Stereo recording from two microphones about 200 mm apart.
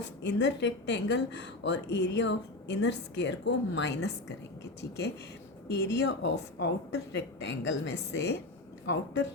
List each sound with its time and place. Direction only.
0.0 s a woman's voice: 60° left (ahead or behind)